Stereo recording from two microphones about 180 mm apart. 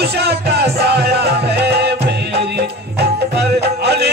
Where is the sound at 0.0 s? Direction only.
65° right (ahead or behind).